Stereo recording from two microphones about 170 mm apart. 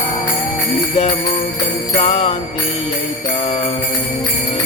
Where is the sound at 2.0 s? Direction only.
40° left (ahead or behind).